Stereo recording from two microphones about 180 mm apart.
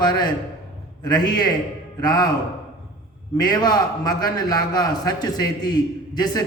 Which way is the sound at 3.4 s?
25° left (ahead or behind).